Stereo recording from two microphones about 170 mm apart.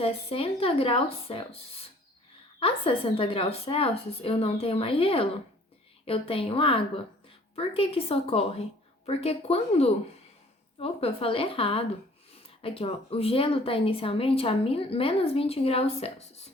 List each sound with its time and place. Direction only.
0.0 s speech: 35° left (ahead or behind)